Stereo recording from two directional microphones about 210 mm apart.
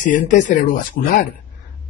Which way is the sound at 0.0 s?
40° left (ahead or behind).